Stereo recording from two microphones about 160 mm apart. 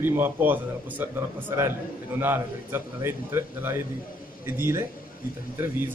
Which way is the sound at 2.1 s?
15° right (ahead or behind).